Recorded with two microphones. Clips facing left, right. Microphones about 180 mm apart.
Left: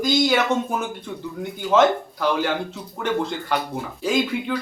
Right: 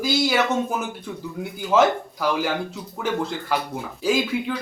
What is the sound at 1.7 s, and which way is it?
Speech, 5° right (ahead or behind).